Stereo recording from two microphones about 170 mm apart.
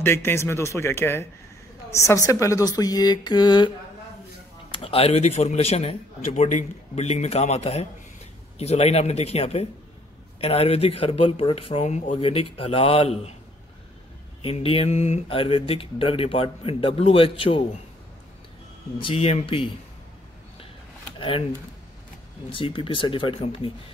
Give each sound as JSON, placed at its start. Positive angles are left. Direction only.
{"t": 0.0, "sound": "speech", "side_deg": 15}
{"t": 4.7, "sound": "speech", "side_deg": 35}
{"t": 14.4, "sound": "speech", "side_deg": 35}
{"t": 18.9, "sound": "speech", "side_deg": 30}
{"t": 22.5, "sound": "speech", "side_deg": 30}